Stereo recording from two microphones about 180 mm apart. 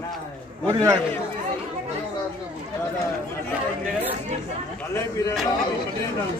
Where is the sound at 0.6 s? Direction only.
20° right (ahead or behind).